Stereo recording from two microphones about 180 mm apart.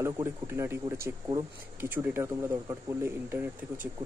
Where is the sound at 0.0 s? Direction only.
15° right (ahead or behind).